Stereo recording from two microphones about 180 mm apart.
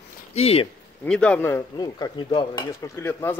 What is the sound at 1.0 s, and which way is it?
Speech, 5° left (ahead or behind).